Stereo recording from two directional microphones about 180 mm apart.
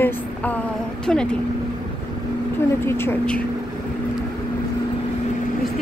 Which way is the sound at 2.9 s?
15° left (ahead or behind).